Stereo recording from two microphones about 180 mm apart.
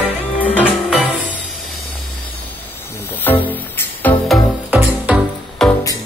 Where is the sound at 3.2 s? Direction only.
10° left (ahead or behind).